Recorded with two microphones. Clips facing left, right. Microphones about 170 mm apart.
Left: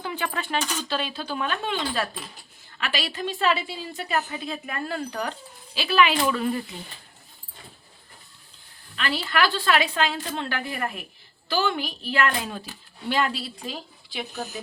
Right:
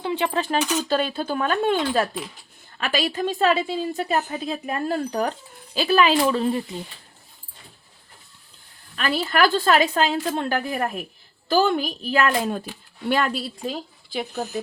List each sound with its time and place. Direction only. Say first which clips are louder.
0.0 s a sound: right 6 dB; 25° right (ahead or behind)
0.6 s speech: right 7 dB; 10° right (ahead or behind)
0.9 s a woman's voice: right 6 dB; 50° right (ahead or behind); by 6.6 s 30° right (ahead or behind)
9.0 s a woman's voice: right 4 dB; 45° right (ahead or behind)